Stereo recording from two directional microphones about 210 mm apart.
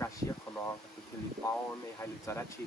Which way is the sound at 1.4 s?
15° left (ahead or behind).